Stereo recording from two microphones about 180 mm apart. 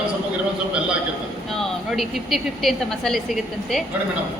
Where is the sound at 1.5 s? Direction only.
Centre (ahead or behind).